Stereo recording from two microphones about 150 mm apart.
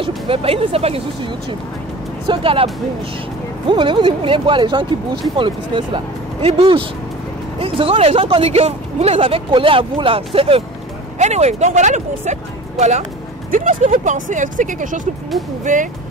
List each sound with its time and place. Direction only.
0.0 s speech: 40° right (ahead or behind)
13.5 s speech: 60° right (ahead or behind)